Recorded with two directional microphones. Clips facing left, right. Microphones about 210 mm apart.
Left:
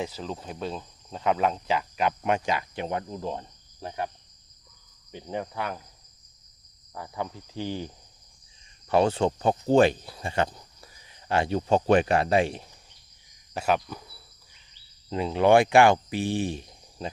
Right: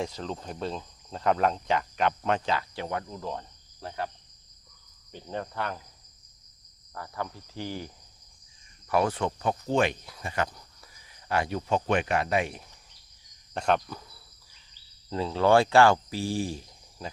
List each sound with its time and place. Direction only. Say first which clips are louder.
0.0 s speech: even; 5° left (ahead or behind)
5.1 s speech: left 2 dB; 15° left (ahead or behind)
6.9 s speech: left 2 dB; 15° left (ahead or behind)
8.9 s speech: left 4 dB; 25° left (ahead or behind)
13.5 s speech: even; 5° left (ahead or behind)
15.1 s speech: left 2 dB; 15° left (ahead or behind)